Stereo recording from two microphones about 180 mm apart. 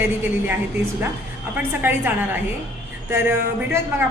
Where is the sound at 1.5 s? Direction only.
10° right (ahead or behind).